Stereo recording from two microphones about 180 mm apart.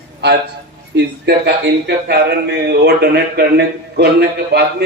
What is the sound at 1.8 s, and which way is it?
Speech, 65° right (ahead or behind).